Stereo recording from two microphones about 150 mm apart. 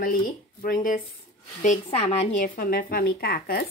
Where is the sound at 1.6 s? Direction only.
45° left (ahead or behind).